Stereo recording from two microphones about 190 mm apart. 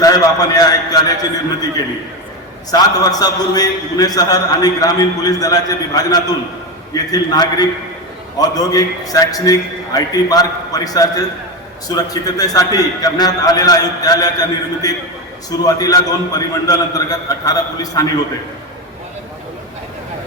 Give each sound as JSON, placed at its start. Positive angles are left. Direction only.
{"t": 0.0, "sound": "a man's voice", "side_deg": 20}
{"t": 3.0, "sound": "a man's voice", "side_deg": 20}